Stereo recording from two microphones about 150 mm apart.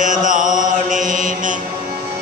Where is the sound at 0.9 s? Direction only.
60° right (ahead or behind).